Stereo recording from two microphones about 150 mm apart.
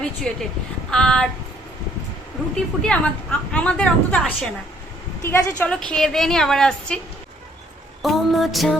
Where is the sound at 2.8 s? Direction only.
5° left (ahead or behind).